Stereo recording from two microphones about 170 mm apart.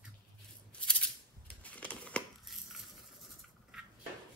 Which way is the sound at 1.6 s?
10° left (ahead or behind).